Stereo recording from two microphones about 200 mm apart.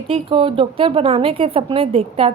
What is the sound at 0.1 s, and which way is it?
A woman's voice, 25° right (ahead or behind).